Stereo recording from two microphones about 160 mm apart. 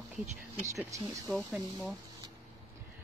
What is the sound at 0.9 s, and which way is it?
Speech, 20° right (ahead or behind).